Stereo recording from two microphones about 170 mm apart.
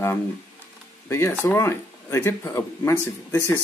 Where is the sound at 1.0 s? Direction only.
15° left (ahead or behind).